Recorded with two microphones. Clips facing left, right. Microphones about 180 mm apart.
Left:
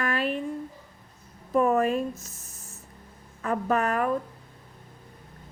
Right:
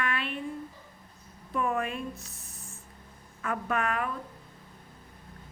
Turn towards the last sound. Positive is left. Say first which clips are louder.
# left 5 dB
turn(degrees=40)  # may be behind; listen again after turning